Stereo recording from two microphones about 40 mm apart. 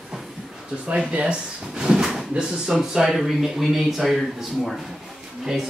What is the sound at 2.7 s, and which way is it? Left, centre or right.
Speech, centre.